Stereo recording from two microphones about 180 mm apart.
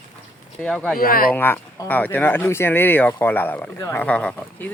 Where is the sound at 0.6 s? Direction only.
5° left (ahead or behind).